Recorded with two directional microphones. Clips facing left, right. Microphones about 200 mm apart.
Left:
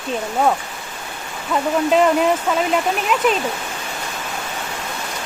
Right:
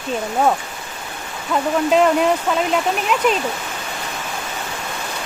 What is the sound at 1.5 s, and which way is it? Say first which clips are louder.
Speech: even; centre (ahead or behind).